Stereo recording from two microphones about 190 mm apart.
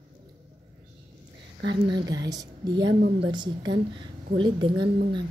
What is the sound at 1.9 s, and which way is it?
A woman's voice, 20° right (ahead or behind).